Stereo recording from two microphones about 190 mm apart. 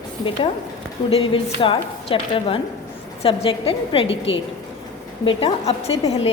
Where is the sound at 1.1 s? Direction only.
30° left (ahead or behind).